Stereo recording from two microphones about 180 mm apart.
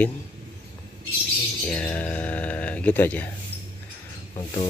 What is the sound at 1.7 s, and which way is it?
Speech, 5° left (ahead or behind).